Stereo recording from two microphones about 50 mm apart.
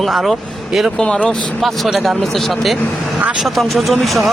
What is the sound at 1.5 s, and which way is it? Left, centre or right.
Speech, centre.